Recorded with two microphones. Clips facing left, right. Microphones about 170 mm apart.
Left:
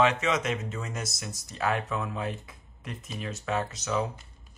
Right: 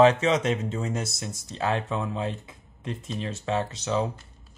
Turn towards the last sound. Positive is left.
turn(degrees=-30)  # may be behind; listen again after turning